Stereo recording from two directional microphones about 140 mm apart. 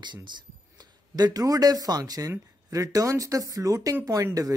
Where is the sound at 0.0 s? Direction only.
35° right (ahead or behind).